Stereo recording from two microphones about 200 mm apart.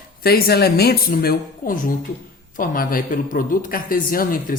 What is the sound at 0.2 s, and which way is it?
Speech, 50° left (ahead or behind).